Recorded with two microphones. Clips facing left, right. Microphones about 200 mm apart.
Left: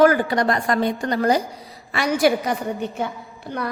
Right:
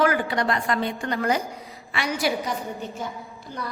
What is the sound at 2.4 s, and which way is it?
Speech, 65° left (ahead or behind).